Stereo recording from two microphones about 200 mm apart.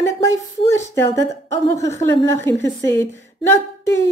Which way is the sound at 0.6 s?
15° left (ahead or behind).